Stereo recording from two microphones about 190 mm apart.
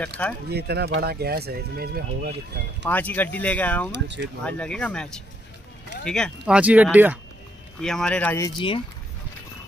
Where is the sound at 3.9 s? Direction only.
65° right (ahead or behind).